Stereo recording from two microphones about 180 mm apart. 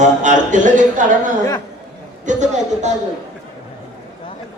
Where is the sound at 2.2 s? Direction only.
45° right (ahead or behind).